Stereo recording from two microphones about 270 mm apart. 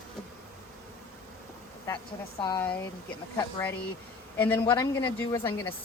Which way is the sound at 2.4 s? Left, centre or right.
Centre.